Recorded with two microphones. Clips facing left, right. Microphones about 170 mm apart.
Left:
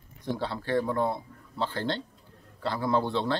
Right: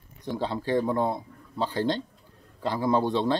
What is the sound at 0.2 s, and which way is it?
Speech, 15° right (ahead or behind).